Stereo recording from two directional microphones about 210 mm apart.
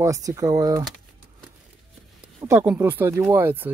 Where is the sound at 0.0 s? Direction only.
15° right (ahead or behind).